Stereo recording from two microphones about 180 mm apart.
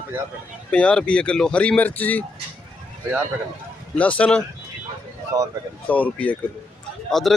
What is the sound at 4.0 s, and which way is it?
Speech, 10° left (ahead or behind).